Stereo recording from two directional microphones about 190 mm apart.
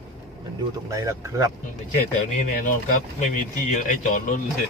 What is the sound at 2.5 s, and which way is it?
Speech, 45° left (ahead or behind).